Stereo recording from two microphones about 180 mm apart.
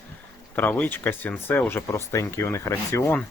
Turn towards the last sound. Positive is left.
turn(degrees=10)  # may be behind; listen again after turning